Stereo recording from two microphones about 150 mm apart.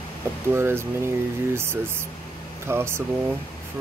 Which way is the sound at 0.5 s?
15° right (ahead or behind).